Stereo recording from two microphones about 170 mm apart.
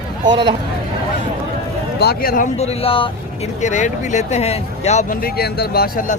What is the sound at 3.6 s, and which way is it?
Speech, 45° left (ahead or behind).